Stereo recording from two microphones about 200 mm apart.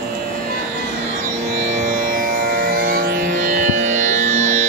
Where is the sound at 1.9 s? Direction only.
45° right (ahead or behind).